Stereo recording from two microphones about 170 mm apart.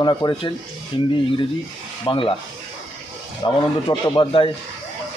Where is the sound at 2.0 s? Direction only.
30° left (ahead or behind).